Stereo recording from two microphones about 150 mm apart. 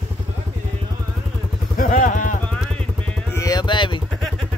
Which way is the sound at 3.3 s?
25° left (ahead or behind).